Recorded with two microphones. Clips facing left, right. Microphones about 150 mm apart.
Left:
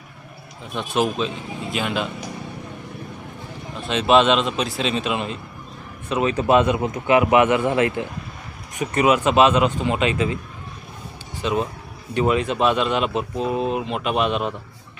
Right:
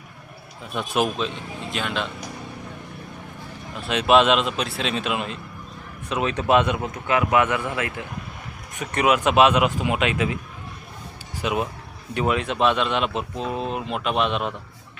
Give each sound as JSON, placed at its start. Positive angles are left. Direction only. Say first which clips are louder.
{"t": 0.7, "sound": "speech", "louder": "left 1 dB", "side_deg": -5}
{"t": 3.8, "sound": "speech", "louder": "left 1 dB", "side_deg": -5}
{"t": 7.1, "sound": "a man's voice", "louder": "left 5 dB", "side_deg": 20}
{"t": 8.8, "sound": "speech", "louder": "left 2 dB", "side_deg": 5}
{"t": 11.4, "sound": "speech", "louder": "left 2 dB", "side_deg": -10}